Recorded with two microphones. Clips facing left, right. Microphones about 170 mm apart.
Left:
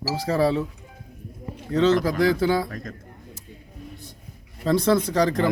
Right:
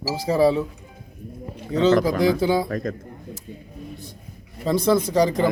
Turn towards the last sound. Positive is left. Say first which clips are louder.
# right 2 dB
turn(degrees=-10)  # may be behind; listen again after turning